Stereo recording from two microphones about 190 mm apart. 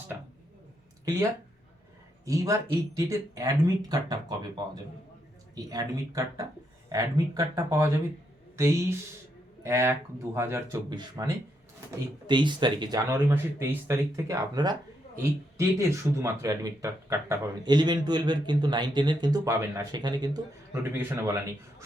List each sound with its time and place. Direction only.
2.2 s speech: 15° right (ahead or behind)